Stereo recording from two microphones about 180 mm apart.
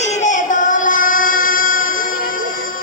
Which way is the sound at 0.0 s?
40° left (ahead or behind).